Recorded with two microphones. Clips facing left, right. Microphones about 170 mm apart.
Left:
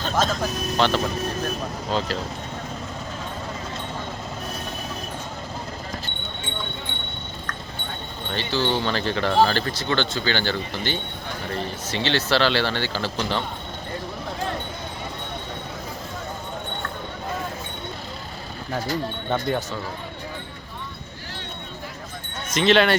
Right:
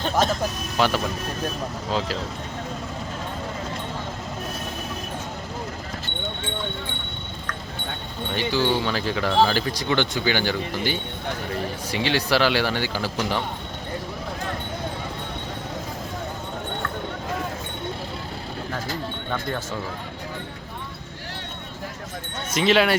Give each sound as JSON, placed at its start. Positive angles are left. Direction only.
{"t": 0.8, "sound": "speech", "side_deg": -5}
{"t": 8.3, "sound": "speech", "side_deg": -10}
{"t": 19.3, "sound": "speech", "side_deg": 20}
{"t": 22.5, "sound": "speech", "side_deg": -5}